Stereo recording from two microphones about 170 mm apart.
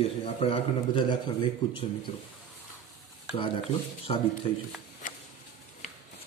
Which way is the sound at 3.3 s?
30° left (ahead or behind).